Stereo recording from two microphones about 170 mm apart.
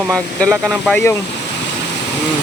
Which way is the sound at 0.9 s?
10° left (ahead or behind).